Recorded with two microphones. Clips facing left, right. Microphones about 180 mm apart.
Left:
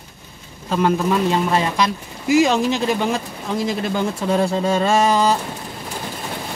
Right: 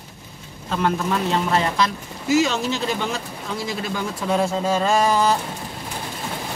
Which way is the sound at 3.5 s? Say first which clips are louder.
Left 6 dB; 50° left (ahead or behind).